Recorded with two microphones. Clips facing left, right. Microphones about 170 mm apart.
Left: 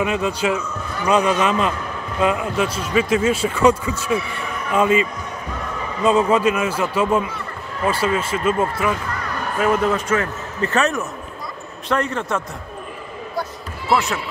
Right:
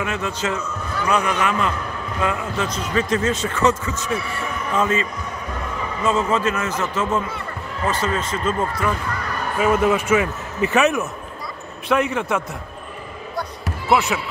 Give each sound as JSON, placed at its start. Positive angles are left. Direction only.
{"t": 0.0, "sound": "a man's voice", "side_deg": 15}
{"t": 6.0, "sound": "a man's voice", "side_deg": 15}
{"t": 9.6, "sound": "a man's voice", "side_deg": -5}